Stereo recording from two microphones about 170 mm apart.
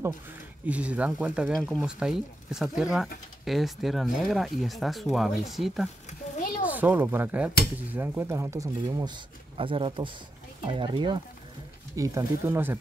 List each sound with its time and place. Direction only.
0.7 s speech: 10° right (ahead or behind)